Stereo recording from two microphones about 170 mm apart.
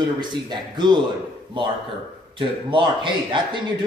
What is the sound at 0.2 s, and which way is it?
Speech, 25° right (ahead or behind).